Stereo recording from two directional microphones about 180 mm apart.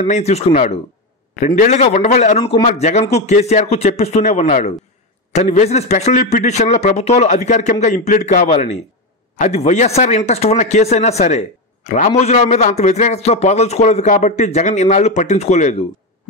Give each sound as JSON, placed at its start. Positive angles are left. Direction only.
{"t": 0.0, "sound": "a man's voice", "side_deg": 40}